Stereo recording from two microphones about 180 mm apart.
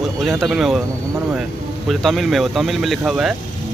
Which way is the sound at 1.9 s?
Centre (ahead or behind).